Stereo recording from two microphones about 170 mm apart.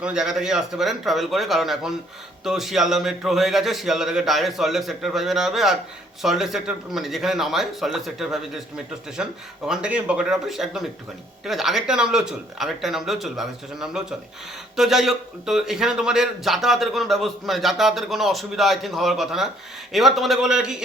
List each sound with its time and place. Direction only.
0.0 s a man's voice: 5° right (ahead or behind)